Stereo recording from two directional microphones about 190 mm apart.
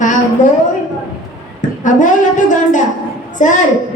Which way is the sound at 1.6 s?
40° left (ahead or behind).